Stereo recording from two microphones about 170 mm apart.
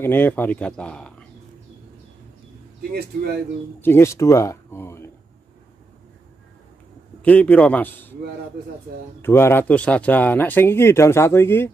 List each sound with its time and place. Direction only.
0.0 s speech: 10° left (ahead or behind)
2.9 s speech: 65° right (ahead or behind)
3.8 s speech: 15° left (ahead or behind)
7.2 s speech: 10° left (ahead or behind)
9.2 s speech: 15° left (ahead or behind)